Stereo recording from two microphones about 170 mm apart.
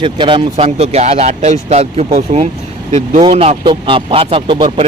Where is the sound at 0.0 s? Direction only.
30° right (ahead or behind).